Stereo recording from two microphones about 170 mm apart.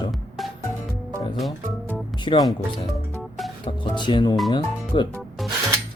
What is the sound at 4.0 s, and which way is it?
Speech, 25° left (ahead or behind).